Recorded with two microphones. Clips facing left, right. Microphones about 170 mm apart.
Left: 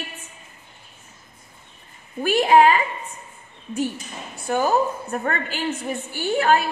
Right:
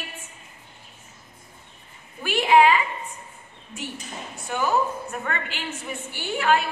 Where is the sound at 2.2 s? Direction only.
45° left (ahead or behind).